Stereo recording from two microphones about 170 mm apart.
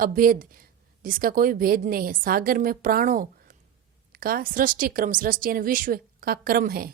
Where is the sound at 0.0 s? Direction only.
55° right (ahead or behind).